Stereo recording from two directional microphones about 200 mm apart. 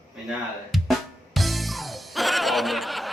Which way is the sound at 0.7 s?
Centre (ahead or behind).